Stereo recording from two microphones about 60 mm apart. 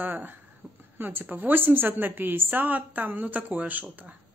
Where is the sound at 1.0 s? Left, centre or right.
Right.